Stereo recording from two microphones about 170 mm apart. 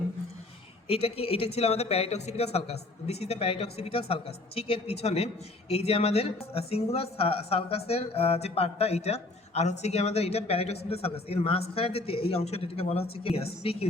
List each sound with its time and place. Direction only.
0.9 s speech: 35° left (ahead or behind)